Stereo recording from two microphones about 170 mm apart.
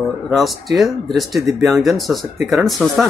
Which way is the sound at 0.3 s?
Centre (ahead or behind).